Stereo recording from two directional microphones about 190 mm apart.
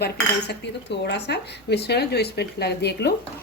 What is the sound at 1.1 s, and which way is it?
Speech, 60° left (ahead or behind).